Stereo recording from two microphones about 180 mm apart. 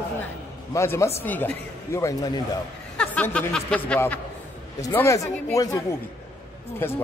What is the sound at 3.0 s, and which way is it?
A woman's voice, 5° left (ahead or behind).